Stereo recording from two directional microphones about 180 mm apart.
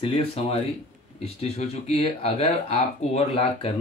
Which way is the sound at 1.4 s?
35° left (ahead or behind).